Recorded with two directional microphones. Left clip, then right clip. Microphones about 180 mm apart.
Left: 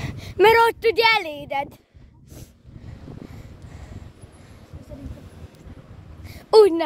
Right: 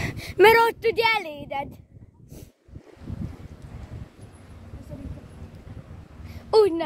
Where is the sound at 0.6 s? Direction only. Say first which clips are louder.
Left 3 dB; 25° left (ahead or behind).